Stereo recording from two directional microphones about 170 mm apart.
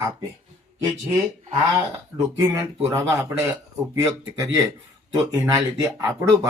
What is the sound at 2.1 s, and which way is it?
Speech, 15° right (ahead or behind).